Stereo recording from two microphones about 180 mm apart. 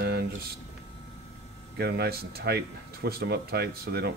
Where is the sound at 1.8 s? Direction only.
60° right (ahead or behind).